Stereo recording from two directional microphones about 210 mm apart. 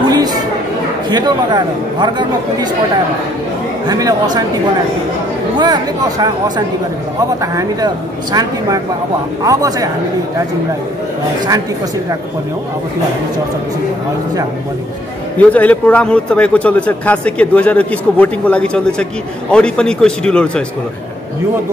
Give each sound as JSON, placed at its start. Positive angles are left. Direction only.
{"t": 0.1, "sound": "chatter", "side_deg": -20}
{"t": 1.1, "sound": "speech", "side_deg": -20}
{"t": 3.9, "sound": "speech", "side_deg": -15}
{"t": 5.6, "sound": "speech", "side_deg": -20}
{"t": 15.3, "sound": "a man's voice", "side_deg": 5}